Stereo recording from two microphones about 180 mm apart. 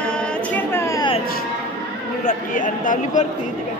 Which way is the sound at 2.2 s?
45° left (ahead or behind).